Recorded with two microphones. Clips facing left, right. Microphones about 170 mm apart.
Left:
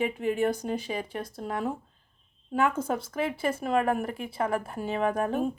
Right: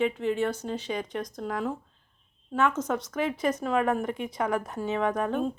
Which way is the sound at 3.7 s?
40° left (ahead or behind).